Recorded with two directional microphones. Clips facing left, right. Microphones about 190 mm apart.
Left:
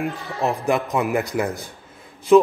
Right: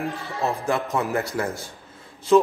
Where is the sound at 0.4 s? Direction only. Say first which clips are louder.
Left 3 dB; 15° left (ahead or behind).